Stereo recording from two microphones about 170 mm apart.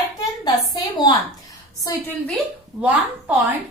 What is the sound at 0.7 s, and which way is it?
Speech, 25° left (ahead or behind).